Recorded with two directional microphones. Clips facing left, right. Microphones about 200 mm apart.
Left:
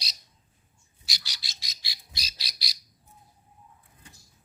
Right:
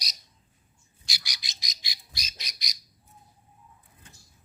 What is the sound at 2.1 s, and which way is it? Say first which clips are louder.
Bird: left 1 dB; 35° left (ahead or behind).